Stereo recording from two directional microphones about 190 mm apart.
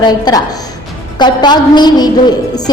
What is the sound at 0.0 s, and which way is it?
A woman's voice, 20° left (ahead or behind).